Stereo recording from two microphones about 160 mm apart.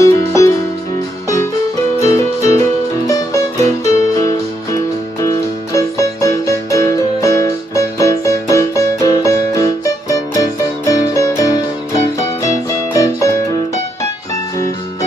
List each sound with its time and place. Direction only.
0.0 s music: 20° left (ahead or behind)
2.0 s music: 20° left (ahead or behind)
3.6 s music: 20° left (ahead or behind)